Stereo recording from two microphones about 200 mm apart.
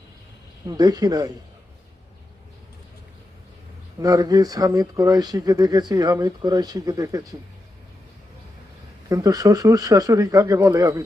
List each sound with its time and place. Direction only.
0.7 s speech: 20° right (ahead or behind)
4.0 s speech: 20° right (ahead or behind)
9.0 s speech: 20° right (ahead or behind)